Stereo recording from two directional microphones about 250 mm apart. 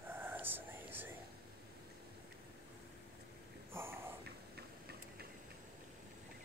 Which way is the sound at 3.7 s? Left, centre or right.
Centre.